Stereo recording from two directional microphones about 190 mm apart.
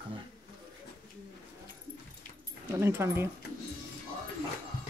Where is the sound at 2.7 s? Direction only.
15° right (ahead or behind).